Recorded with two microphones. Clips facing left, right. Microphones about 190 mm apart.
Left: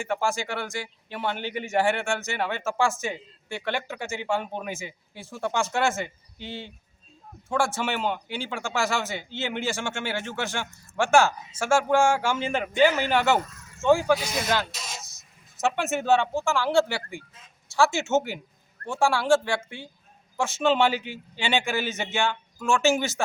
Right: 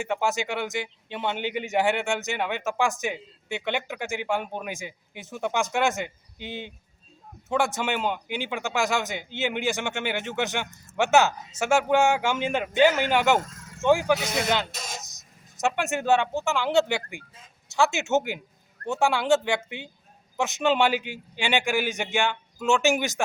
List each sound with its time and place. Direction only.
0.0 s a man's voice: 20° right (ahead or behind)
13.4 s a sound: 90° right
13.8 s a man's voice: 15° right (ahead or behind)
14.7 s speech: 50° right (ahead or behind)
15.5 s a man's voice: 15° right (ahead or behind)